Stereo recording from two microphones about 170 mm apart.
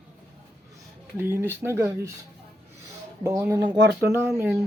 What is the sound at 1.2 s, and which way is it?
Speech, 15° right (ahead or behind).